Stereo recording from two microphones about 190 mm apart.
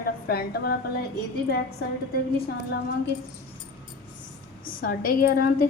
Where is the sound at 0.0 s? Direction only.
55° left (ahead or behind).